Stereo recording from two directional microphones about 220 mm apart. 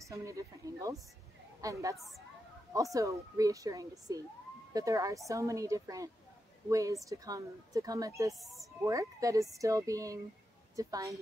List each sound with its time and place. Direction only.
0.0 s speech: 15° right (ahead or behind)
2.0 s speech: centre (ahead or behind)
2.7 s speech: 15° right (ahead or behind)
8.4 s speech: centre (ahead or behind)
8.8 s speech: 15° right (ahead or behind)